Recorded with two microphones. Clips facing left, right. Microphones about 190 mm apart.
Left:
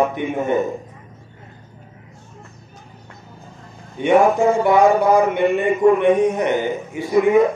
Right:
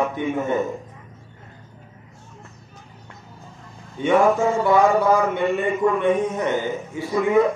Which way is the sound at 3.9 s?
15° left (ahead or behind).